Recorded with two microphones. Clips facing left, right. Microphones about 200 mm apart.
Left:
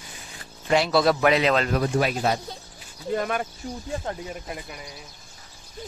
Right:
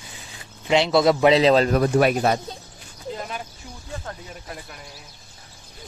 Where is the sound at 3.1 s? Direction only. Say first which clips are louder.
Left 6 dB; 60° left (ahead or behind).